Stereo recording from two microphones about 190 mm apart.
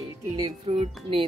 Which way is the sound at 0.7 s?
30° right (ahead or behind).